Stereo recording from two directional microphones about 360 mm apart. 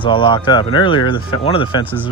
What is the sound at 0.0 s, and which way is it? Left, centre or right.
Speech, centre.